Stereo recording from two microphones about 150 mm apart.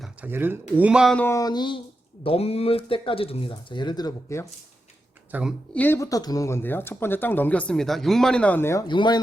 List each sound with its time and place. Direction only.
0.0 s speech: 10° right (ahead or behind)
1.1 s speech: 10° left (ahead or behind)
1.4 s speech: 25° left (ahead or behind)
2.2 s speech: 40° left (ahead or behind); by 4.4 s 20° left (ahead or behind)
5.3 s speech: 5° right (ahead or behind)
5.7 s speech: 15° left (ahead or behind)
8.9 s speech: 30° left (ahead or behind)